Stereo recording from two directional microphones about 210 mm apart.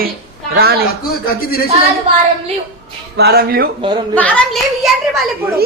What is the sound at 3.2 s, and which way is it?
Speech, 50° right (ahead or behind).